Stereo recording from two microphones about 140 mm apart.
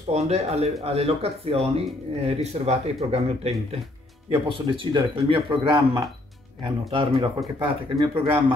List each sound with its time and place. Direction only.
0.1 s speech: 50° right (ahead or behind)
7.3 s speech: 25° right (ahead or behind)
8.1 s speech: 35° right (ahead or behind)